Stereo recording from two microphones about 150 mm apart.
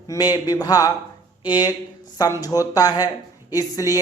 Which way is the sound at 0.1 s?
25° left (ahead or behind).